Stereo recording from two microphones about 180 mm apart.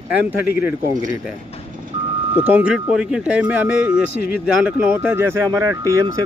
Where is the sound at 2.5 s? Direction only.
10° right (ahead or behind).